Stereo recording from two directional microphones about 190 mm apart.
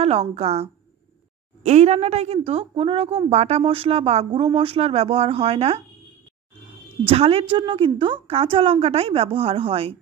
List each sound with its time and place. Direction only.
0.0 s a woman's voice: 30° right (ahead or behind)
7.1 s a woman's voice: 30° right (ahead or behind)